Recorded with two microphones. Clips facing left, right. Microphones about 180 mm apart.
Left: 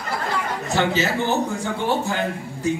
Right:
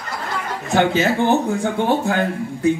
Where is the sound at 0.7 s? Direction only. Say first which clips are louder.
Right 5 dB; 55° right (ahead or behind).